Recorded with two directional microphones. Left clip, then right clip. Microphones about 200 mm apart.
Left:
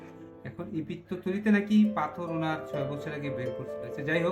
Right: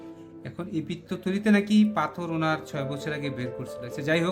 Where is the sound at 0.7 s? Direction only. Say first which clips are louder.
Right 3 dB; 40° right (ahead or behind).